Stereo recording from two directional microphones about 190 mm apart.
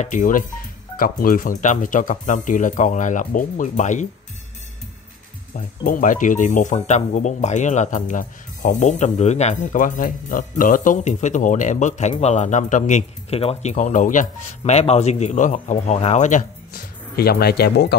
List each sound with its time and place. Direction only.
0.0 s speech: 45° left (ahead or behind)
5.9 s speech: 45° left (ahead or behind)